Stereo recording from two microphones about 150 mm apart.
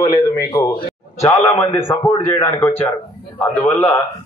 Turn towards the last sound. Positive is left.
turn(degrees=15)  # may be behind; listen again after turning